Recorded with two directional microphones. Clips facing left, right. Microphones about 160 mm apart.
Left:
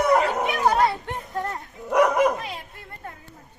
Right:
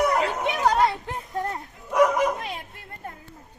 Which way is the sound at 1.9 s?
60° left (ahead or behind).